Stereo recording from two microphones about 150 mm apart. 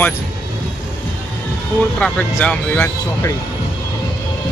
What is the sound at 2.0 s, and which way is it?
Speech, 10° left (ahead or behind).